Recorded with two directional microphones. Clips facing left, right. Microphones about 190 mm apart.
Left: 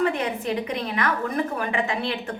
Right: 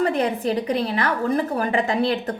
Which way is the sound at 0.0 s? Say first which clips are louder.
Right 3 dB; 35° right (ahead or behind).